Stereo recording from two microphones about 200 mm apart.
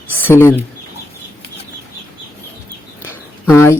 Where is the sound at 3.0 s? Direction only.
10° left (ahead or behind).